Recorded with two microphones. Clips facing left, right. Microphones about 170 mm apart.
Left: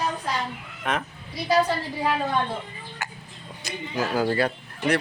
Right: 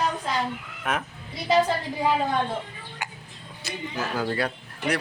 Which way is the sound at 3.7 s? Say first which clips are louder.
Left 3 dB; 10° left (ahead or behind).